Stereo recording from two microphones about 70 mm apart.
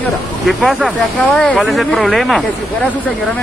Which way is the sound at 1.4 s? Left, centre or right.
Centre.